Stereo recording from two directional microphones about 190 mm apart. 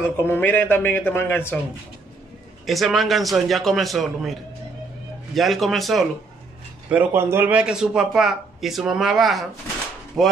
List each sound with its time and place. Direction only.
0.0 s speech: 10° left (ahead or behind)
2.6 s a man's voice: centre (ahead or behind)